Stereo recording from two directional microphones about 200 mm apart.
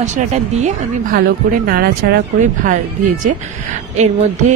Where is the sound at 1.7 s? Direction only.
50° right (ahead or behind).